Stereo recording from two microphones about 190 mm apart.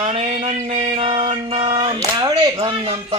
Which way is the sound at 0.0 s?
35° right (ahead or behind).